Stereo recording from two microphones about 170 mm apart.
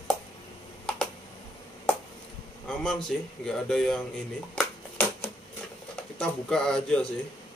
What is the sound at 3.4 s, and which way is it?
Speech, 5° left (ahead or behind).